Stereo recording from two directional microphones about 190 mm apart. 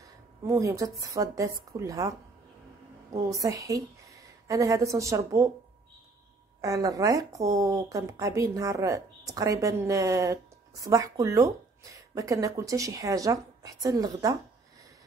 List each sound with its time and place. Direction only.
0.5 s a woman's voice: 15° right (ahead or behind)
6.6 s a woman's voice: 15° right (ahead or behind)